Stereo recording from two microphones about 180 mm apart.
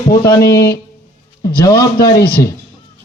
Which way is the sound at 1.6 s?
20° left (ahead or behind).